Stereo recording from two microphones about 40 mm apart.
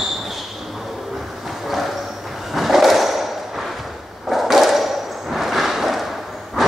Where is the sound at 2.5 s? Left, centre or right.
Centre.